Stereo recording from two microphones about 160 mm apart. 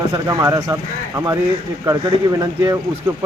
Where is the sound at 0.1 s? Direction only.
20° right (ahead or behind).